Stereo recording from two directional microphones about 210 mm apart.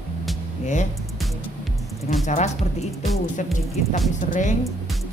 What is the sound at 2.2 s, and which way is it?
Speech, 35° left (ahead or behind).